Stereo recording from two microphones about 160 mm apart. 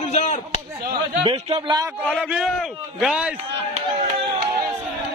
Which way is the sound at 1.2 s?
35° right (ahead or behind).